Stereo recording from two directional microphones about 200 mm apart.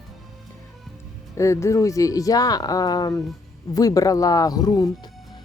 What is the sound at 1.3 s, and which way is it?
Speech, 15° left (ahead or behind).